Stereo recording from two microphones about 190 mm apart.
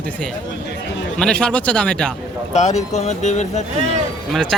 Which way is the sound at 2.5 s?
35° left (ahead or behind).